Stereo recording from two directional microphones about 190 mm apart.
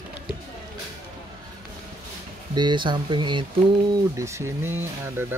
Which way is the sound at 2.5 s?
25° right (ahead or behind).